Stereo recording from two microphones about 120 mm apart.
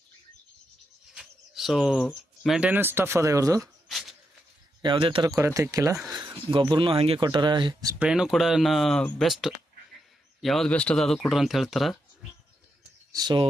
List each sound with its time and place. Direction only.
1.1 s speech: 5° right (ahead or behind); by 3.7 s 30° right (ahead or behind)
4.8 s speech: 45° right (ahead or behind)
5.4 s speech: 20° right (ahead or behind)
6.5 s speech: 45° right (ahead or behind)
7.2 s speech: 40° right (ahead or behind)
7.9 s speech: 5° right (ahead or behind)
13.1 s speech: 40° right (ahead or behind)